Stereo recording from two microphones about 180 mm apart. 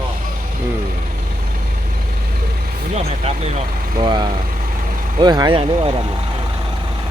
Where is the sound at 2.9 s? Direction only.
35° right (ahead or behind).